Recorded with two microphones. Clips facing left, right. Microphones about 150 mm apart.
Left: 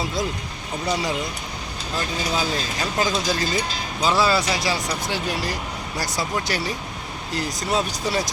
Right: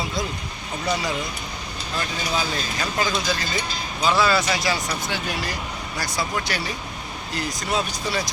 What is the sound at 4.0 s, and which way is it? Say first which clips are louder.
Speech: even; 35° left (ahead or behind).